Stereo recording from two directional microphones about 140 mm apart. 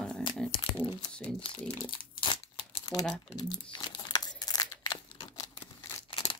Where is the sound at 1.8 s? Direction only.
35° left (ahead or behind).